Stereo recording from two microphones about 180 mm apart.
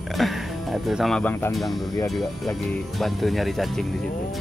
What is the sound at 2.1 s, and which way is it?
A man's voice, centre (ahead or behind).